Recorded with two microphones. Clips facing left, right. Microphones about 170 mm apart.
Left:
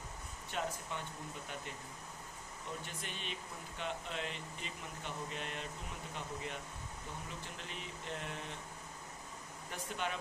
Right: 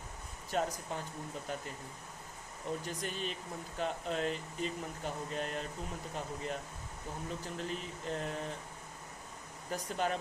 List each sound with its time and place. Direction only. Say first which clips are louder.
0.5 s speech: right 5 dB; 40° right (ahead or behind)
2.8 s speech: right 7 dB; 40° right (ahead or behind)
9.7 s speech: right 6 dB; 40° right (ahead or behind)